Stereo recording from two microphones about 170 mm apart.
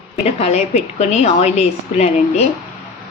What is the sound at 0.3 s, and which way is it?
A woman's voice, 40° left (ahead or behind).